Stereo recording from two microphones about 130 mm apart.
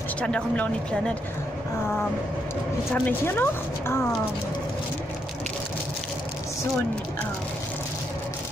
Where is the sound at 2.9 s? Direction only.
15° left (ahead or behind).